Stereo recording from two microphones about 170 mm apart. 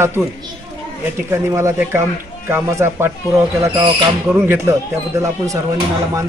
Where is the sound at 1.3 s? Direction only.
15° right (ahead or behind).